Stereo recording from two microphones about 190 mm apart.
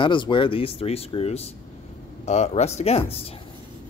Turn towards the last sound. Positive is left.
turn(degrees=30)  # may be behind; listen again after turning